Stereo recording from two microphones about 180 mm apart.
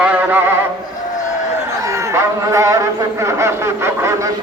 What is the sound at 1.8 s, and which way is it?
A man's voice, 15° right (ahead or behind).